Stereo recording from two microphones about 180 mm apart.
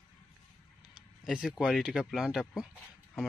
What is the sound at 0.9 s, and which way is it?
Speech, 5° right (ahead or behind).